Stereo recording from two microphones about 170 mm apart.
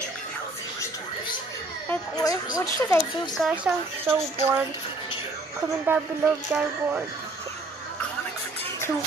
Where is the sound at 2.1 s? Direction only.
20° left (ahead or behind).